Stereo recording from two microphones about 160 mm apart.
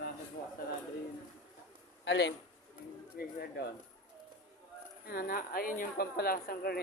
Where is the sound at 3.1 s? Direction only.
75° left (ahead or behind).